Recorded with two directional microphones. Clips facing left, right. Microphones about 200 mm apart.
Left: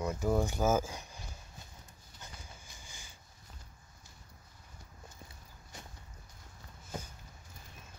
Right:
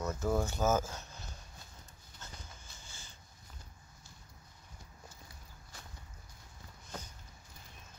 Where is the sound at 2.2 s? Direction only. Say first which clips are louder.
Even; 15° left (ahead or behind).